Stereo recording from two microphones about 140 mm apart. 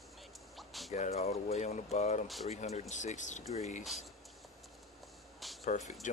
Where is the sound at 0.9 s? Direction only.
50° left (ahead or behind).